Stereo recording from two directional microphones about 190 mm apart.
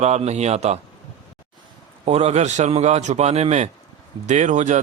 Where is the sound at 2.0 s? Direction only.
35° right (ahead or behind).